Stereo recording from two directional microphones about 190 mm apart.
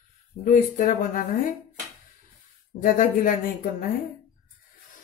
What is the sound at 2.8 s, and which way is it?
Speech, 45° left (ahead or behind).